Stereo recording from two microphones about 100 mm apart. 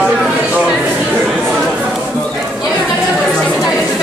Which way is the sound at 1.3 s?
5° left (ahead or behind).